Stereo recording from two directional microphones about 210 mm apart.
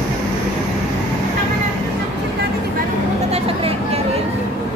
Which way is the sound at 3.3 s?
30° right (ahead or behind).